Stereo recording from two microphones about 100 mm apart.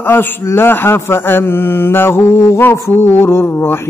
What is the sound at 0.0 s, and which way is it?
Mantra, 20° left (ahead or behind).